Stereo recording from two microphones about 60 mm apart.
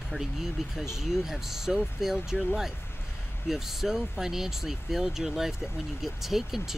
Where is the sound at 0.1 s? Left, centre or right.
Centre.